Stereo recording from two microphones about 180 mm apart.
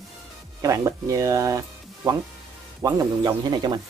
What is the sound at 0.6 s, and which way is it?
Speech, 20° right (ahead or behind).